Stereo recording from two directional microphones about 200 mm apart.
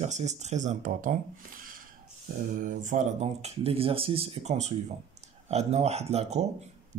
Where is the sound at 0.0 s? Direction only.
35° right (ahead or behind).